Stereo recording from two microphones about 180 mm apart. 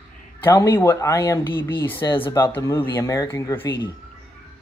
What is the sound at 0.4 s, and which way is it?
Speech, 15° left (ahead or behind).